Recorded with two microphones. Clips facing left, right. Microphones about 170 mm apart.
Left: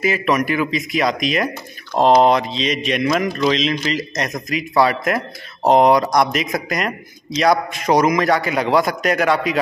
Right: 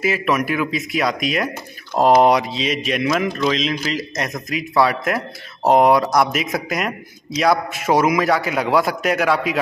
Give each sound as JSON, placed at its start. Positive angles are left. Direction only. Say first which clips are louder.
{"t": 0.0, "sound": "speech", "louder": "left 1 dB", "side_deg": -5}